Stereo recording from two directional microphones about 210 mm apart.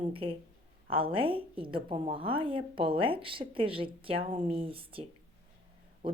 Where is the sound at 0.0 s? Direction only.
25° right (ahead or behind).